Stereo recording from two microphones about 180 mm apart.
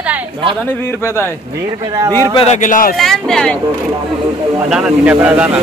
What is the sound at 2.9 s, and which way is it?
Speech, centre (ahead or behind).